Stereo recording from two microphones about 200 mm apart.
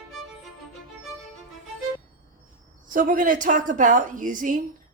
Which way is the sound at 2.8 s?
45° right (ahead or behind).